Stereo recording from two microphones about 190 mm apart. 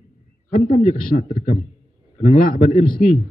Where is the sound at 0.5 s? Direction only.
45° left (ahead or behind).